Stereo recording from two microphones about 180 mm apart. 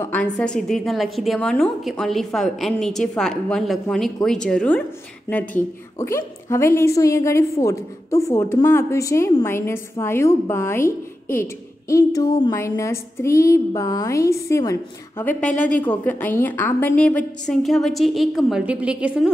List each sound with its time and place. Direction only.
0.0 s a woman's voice: 10° left (ahead or behind)
15.5 s speech: 45° left (ahead or behind)
15.8 s a woman's voice: 10° left (ahead or behind); by 19.3 s 5° right (ahead or behind)